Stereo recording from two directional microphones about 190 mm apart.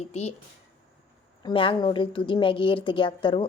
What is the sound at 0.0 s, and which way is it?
Speech, 35° left (ahead or behind).